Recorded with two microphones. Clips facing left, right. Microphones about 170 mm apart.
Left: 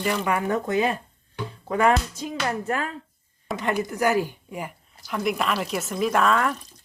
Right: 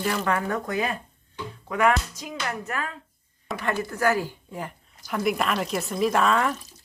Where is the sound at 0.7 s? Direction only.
25° left (ahead or behind).